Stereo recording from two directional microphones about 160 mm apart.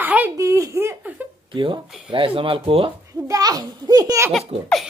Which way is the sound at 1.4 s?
30° right (ahead or behind).